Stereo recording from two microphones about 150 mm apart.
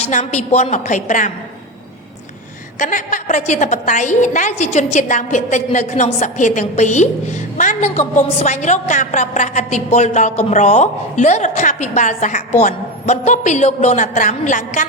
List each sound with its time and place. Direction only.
0.1 s a woman's voice: 50° left (ahead or behind)
2.7 s a woman's voice: 55° left (ahead or behind)